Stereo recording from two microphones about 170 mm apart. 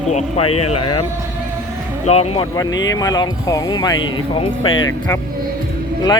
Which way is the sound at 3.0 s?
20° left (ahead or behind).